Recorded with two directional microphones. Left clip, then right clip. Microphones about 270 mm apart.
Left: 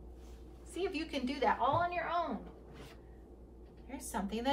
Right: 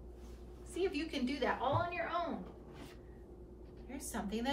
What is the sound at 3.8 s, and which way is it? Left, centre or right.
Speech, centre.